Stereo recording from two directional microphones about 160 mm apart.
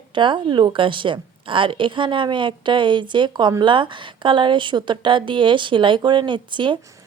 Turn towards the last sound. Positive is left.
turn(degrees=-30)  # may be behind; listen again after turning